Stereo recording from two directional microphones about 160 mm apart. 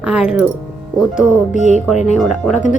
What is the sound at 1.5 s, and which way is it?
Speech, 45° left (ahead or behind).